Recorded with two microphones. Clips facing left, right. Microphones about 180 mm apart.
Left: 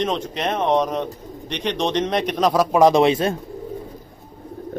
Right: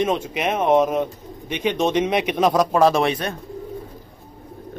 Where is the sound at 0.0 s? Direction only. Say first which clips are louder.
Right 1 dB; 10° right (ahead or behind).